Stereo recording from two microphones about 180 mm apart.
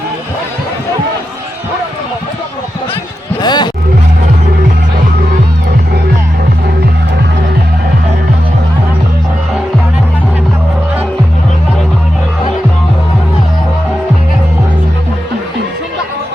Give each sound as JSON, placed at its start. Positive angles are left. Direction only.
{"t": 3.4, "sound": "music", "side_deg": 25}